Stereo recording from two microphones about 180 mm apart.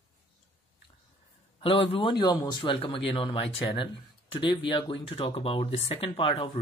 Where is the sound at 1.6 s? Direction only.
30° left (ahead or behind).